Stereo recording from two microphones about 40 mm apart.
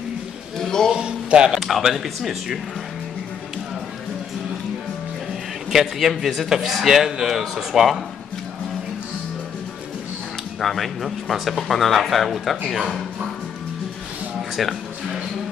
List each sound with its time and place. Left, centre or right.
0.6 s a sound: centre
0.9 s a sound: right
1.6 s speech: centre
5.7 s a man's voice: centre
10.6 s a man's voice: centre
14.6 s music: centre